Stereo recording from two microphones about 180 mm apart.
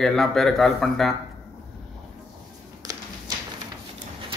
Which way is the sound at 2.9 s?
20° right (ahead or behind).